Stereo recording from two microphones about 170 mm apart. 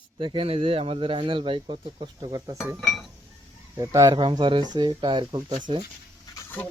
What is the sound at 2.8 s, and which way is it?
Speech, centre (ahead or behind).